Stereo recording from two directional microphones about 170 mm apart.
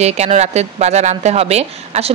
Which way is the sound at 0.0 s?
40° right (ahead or behind).